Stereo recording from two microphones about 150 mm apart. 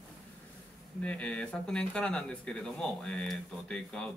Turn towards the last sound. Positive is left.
turn(degrees=5)  # may be behind; listen again after turning